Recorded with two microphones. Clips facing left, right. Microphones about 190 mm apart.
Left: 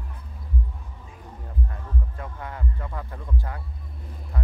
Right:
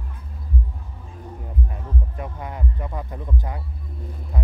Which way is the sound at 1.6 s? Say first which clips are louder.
Right 3 dB; 15° right (ahead or behind).